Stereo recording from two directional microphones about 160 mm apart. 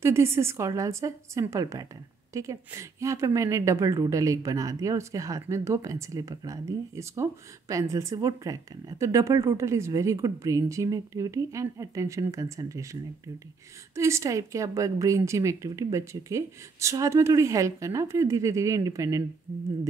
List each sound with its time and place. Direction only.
0.0 s a woman's voice: 15° right (ahead or behind)
13.9 s a woman's voice: 20° right (ahead or behind)